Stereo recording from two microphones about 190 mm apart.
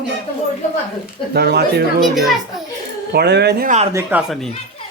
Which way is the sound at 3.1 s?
60° right (ahead or behind).